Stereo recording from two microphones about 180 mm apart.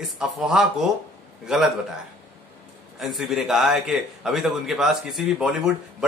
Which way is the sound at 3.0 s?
Centre (ahead or behind).